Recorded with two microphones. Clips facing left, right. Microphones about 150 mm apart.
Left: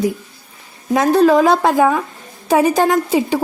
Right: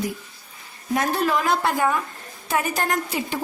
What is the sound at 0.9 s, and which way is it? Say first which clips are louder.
A woman's voice: left 11 dB; 90° left.